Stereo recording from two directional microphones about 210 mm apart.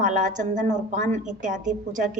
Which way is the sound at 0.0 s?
35° right (ahead or behind).